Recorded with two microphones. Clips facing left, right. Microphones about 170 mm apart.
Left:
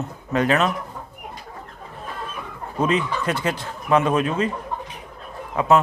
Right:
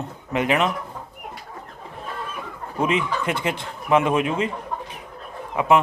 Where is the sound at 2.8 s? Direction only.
25° right (ahead or behind).